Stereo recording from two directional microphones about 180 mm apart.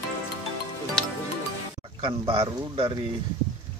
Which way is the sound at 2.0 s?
30° right (ahead or behind).